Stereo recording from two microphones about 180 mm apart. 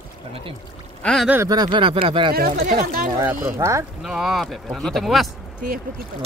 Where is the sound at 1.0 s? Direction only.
Centre (ahead or behind).